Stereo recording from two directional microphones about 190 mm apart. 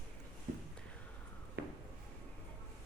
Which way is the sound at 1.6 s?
55° right (ahead or behind).